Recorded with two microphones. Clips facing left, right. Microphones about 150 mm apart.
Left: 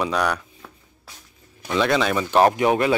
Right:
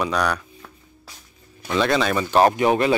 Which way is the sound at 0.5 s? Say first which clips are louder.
Right 1 dB; 5° left (ahead or behind).